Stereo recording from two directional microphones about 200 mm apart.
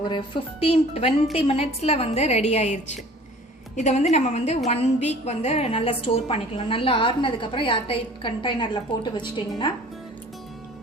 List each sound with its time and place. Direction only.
0.0 s a woman's voice: 25° left (ahead or behind)